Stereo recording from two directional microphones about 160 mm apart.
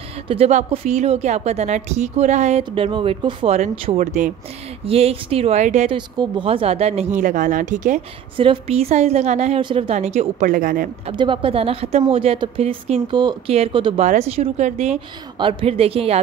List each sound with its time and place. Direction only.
0.3 s speech: 40° right (ahead or behind)
4.0 s a woman's voice: 50° right (ahead or behind)
4.8 s speech: 40° right (ahead or behind)
5.9 s speech: 30° right (ahead or behind)
7.2 s a woman's voice: 55° right (ahead or behind)
8.4 s speech: 35° right (ahead or behind)
9.6 s a woman's voice: 35° right (ahead or behind); by 10.9 s 60° right (ahead or behind)
11.1 s speech: 35° right (ahead or behind)
13.1 s speech: 25° right (ahead or behind)
13.9 s a woman's voice: 45° right (ahead or behind)